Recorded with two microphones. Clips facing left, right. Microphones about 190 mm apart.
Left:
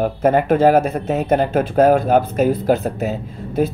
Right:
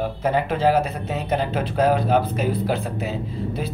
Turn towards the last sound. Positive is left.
turn(degrees=45)  # may be behind; listen again after turning